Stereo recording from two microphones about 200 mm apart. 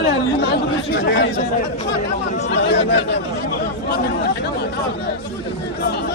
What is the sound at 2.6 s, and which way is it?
Speech, 60° left (ahead or behind).